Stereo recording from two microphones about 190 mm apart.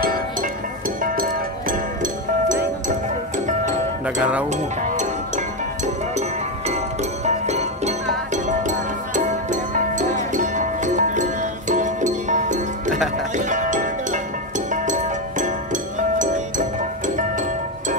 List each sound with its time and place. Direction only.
0.0 s music: 50° right (ahead or behind)
4.0 s speech: 5° right (ahead or behind)
4.5 s music: 40° right (ahead or behind)
6.7 s music: 35° right (ahead or behind)